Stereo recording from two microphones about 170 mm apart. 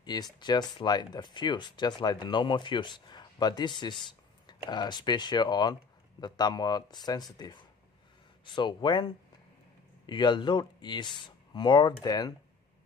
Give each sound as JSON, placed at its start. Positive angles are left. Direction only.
{"t": 0.0, "sound": "speech", "side_deg": 25}